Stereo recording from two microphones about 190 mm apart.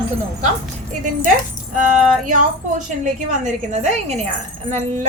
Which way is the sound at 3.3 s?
40° right (ahead or behind).